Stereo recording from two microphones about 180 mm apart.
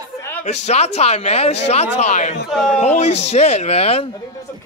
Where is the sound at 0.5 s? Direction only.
40° left (ahead or behind).